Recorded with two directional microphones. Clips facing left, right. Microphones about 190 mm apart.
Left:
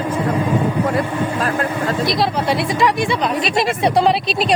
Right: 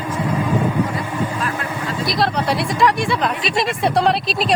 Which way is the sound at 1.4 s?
40° left (ahead or behind).